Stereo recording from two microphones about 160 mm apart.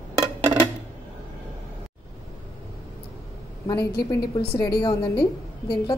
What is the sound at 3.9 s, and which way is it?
Speech, 85° left.